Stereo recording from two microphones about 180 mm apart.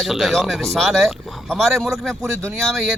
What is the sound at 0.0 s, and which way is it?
Speech, centre (ahead or behind).